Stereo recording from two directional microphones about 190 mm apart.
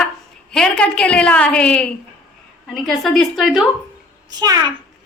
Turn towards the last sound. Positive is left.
turn(degrees=-20)  # may be behind; listen again after turning